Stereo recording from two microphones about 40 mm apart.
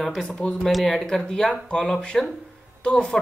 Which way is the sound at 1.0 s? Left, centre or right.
Centre.